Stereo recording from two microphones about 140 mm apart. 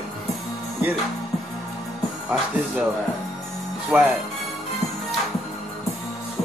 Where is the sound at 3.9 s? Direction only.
Centre (ahead or behind).